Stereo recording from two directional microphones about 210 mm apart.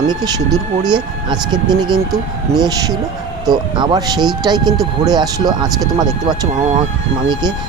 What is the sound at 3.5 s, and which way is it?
Speech, 20° right (ahead or behind).